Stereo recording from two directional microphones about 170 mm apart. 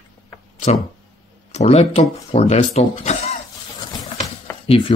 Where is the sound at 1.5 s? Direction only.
40° left (ahead or behind).